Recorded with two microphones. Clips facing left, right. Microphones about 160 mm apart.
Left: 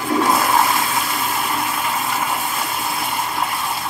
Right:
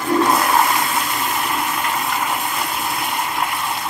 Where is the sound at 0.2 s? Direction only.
Centre (ahead or behind).